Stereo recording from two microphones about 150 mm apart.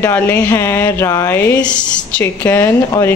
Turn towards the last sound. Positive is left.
turn(degrees=20)  # may be behind; listen again after turning